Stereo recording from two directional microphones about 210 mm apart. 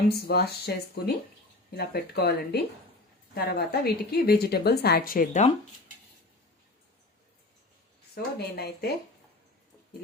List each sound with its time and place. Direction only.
0.1 s a woman's voice: 50° left (ahead or behind)
8.1 s a woman's voice: 50° left (ahead or behind)